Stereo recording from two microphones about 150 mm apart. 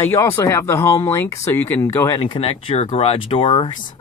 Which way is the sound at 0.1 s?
15° left (ahead or behind).